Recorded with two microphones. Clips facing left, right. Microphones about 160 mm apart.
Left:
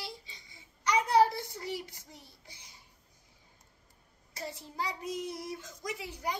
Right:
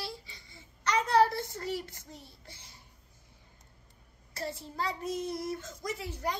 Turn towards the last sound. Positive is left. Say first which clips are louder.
# right 2 dB
turn(degrees=15)  # may be behind; listen again after turning